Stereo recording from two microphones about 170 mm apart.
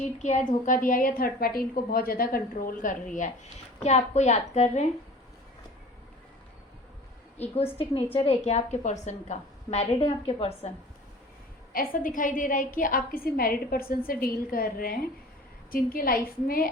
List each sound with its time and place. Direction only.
0.0 s a woman's voice: 45° left (ahead or behind)
3.8 s a woman's voice: 40° left (ahead or behind)
7.3 s a woman's voice: 35° left (ahead or behind)
11.7 s a woman's voice: 55° left (ahead or behind)